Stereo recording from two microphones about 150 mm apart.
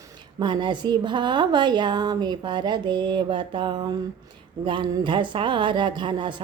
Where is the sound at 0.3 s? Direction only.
30° right (ahead or behind).